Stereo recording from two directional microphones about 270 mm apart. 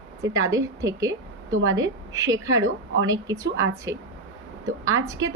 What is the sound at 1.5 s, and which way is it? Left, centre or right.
Speech, right.